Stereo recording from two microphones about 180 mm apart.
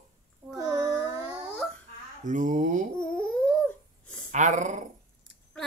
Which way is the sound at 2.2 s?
45° right (ahead or behind).